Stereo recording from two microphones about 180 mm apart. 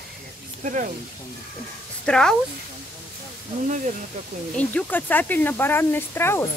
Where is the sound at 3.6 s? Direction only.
45° right (ahead or behind).